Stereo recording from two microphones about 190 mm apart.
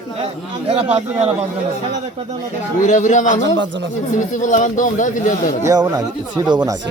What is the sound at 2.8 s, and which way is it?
Speech, 40° left (ahead or behind).